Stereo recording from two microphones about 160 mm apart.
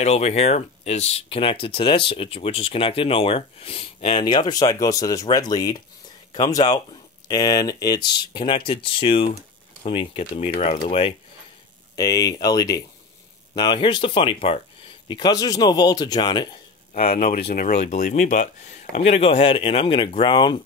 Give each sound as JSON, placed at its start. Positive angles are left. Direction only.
{"t": 0.0, "sound": "speech", "side_deg": 40}
{"t": 11.9, "sound": "speech", "side_deg": 25}
{"t": 16.9, "sound": "speech", "side_deg": 45}